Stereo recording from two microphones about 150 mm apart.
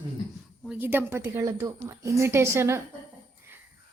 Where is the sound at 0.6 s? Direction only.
15° right (ahead or behind).